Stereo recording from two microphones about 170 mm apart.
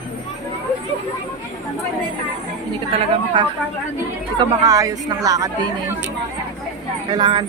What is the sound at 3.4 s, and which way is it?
Speech, 30° right (ahead or behind).